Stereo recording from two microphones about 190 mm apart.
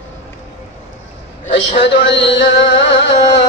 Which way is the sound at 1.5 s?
70° left (ahead or behind).